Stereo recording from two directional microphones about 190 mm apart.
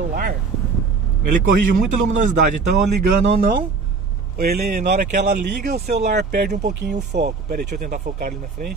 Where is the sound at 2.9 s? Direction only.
55° right (ahead or behind).